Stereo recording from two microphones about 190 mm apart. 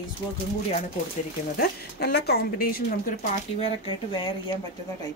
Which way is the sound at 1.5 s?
55° left (ahead or behind).